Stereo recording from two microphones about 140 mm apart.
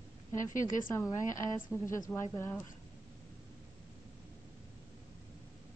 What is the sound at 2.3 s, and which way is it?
Speech, 10° left (ahead or behind).